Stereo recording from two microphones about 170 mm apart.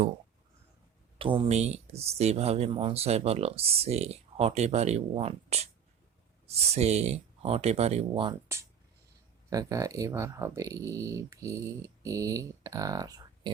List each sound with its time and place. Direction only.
1.2 s speech: 30° right (ahead or behind)
6.7 s speech: 40° right (ahead or behind)
9.5 s speech: 20° right (ahead or behind)